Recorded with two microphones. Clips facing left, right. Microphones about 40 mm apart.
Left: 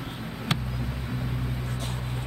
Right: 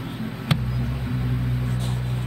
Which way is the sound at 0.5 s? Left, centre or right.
Centre.